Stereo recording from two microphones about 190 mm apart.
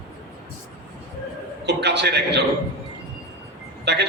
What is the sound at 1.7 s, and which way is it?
Speech, 65° right (ahead or behind).